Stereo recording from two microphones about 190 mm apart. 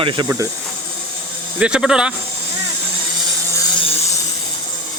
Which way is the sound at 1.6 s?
5° right (ahead or behind).